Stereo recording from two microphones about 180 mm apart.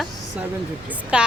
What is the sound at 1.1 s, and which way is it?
Speech, 5° right (ahead or behind).